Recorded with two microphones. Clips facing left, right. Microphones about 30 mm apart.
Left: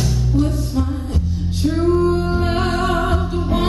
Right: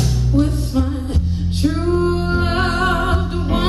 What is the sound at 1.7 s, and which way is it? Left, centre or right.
Music, centre.